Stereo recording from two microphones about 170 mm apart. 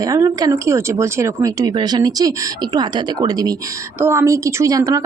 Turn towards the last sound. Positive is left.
turn(degrees=-20)  # may be behind; listen again after turning